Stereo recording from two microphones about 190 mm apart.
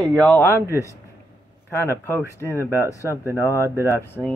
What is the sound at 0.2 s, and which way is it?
Speech, 10° left (ahead or behind).